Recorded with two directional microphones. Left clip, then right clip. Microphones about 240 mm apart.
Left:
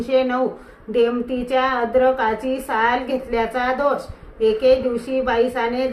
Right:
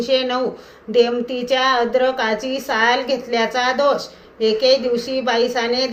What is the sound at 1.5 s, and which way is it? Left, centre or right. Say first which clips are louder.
A woman's voice: right 2 dB; centre.